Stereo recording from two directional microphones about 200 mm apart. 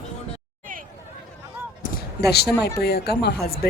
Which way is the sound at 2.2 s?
55° left (ahead or behind).